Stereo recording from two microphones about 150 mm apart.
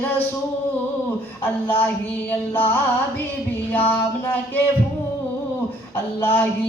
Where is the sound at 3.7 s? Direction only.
10° left (ahead or behind).